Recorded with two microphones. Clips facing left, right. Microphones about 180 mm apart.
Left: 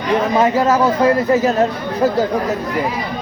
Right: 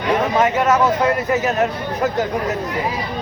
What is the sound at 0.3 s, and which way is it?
A man's voice, 30° left (ahead or behind).